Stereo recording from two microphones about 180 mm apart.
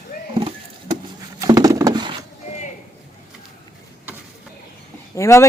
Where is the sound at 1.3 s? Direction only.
20° right (ahead or behind).